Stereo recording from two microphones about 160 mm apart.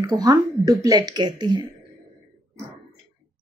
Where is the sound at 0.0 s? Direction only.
25° right (ahead or behind).